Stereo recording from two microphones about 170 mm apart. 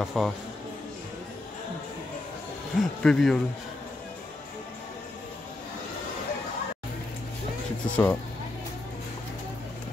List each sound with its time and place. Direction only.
0.0 s speech: centre (ahead or behind)
2.7 s speech: centre (ahead or behind)
7.9 s speech: 10° left (ahead or behind)